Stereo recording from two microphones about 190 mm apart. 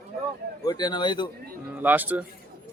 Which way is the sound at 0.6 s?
20° left (ahead or behind).